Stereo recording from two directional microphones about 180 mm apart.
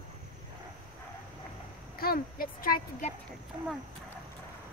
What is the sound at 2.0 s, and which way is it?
Speech, 55° left (ahead or behind).